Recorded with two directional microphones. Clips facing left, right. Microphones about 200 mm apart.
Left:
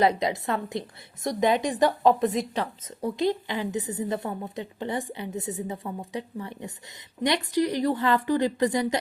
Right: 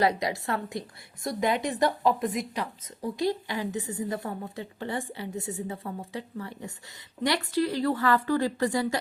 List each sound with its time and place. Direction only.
0.0 s a woman's voice: 20° left (ahead or behind)